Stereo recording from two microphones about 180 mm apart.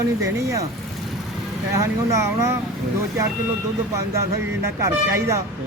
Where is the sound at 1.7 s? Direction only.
15° right (ahead or behind).